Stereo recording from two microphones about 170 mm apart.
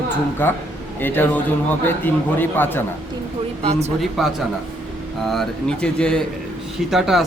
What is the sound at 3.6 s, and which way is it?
Speech, 40° right (ahead or behind).